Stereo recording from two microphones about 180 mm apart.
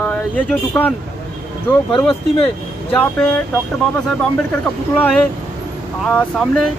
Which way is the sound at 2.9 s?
5° left (ahead or behind).